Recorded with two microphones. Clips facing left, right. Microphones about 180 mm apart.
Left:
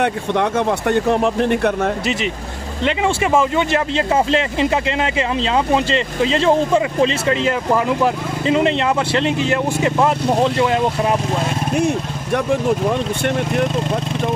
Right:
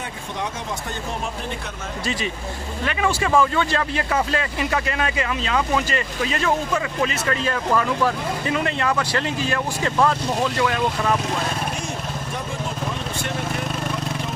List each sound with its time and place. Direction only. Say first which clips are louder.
0.0 s speech: left 12 dB; 65° left (ahead or behind)
2.8 s speech: left 5 dB; 20° left (ahead or behind)